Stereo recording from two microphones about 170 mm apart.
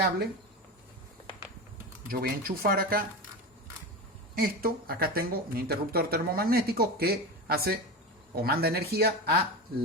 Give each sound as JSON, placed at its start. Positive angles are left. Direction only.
{"t": 2.0, "sound": "speech", "side_deg": -60}
{"t": 4.4, "sound": "speech", "side_deg": -60}